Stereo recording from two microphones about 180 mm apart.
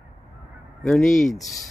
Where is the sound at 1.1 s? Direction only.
45° left (ahead or behind).